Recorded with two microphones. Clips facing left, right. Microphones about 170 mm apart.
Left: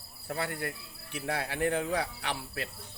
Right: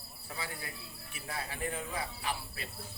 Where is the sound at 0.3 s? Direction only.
60° left (ahead or behind).